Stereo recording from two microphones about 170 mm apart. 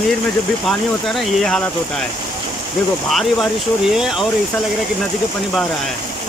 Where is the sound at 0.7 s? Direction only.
Centre (ahead or behind).